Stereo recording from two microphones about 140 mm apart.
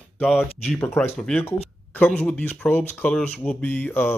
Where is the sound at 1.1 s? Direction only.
5° left (ahead or behind).